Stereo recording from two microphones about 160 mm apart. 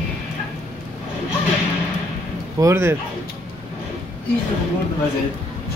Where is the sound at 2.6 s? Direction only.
15° right (ahead or behind).